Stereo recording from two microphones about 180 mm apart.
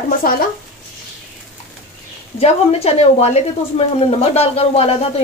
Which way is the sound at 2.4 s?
35° left (ahead or behind).